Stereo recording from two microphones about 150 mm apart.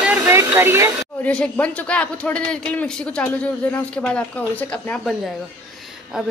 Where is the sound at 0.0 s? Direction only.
15° right (ahead or behind).